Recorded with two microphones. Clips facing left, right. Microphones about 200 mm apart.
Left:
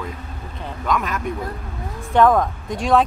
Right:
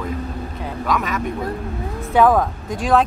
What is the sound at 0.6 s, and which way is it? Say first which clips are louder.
Speech: even; centre (ahead or behind).